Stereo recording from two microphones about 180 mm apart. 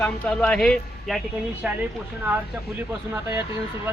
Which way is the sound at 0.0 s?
5° left (ahead or behind).